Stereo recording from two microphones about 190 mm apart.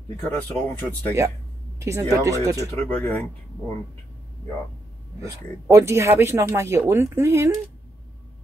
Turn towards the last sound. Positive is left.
turn(degrees=-15)  # may be behind; listen again after turning